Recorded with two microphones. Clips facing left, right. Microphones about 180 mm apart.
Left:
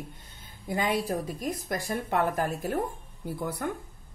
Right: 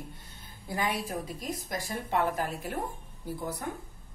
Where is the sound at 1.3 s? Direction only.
50° left (ahead or behind).